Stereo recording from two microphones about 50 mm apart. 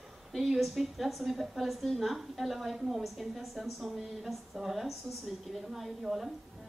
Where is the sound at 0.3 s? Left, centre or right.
Centre.